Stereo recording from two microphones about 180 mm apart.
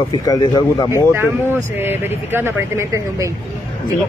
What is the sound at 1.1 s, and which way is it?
Speech, 10° right (ahead or behind).